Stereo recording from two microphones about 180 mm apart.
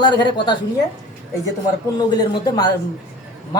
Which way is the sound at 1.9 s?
25° left (ahead or behind).